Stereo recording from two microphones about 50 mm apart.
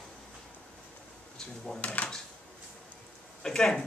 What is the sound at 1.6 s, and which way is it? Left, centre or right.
Speech, left.